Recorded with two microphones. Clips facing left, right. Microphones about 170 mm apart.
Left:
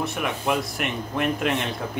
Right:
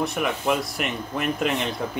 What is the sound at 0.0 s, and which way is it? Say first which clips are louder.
Speech: right 2 dB; centre (ahead or behind).